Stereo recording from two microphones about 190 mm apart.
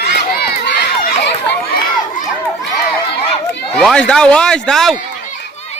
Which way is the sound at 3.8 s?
5° left (ahead or behind).